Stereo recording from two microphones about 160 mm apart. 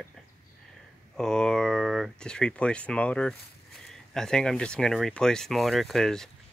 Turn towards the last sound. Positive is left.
turn(degrees=5)  # may be behind; listen again after turning